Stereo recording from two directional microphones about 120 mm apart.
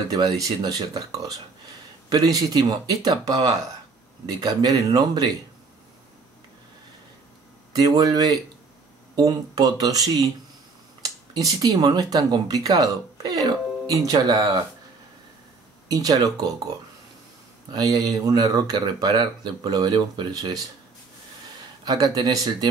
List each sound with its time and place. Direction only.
0.1 s speech: 35° right (ahead or behind)
7.7 s speech: 35° right (ahead or behind)
11.3 s speech: 30° right (ahead or behind)
15.9 s speech: 30° right (ahead or behind)
17.7 s speech: 30° right (ahead or behind)
21.8 s speech: 35° right (ahead or behind)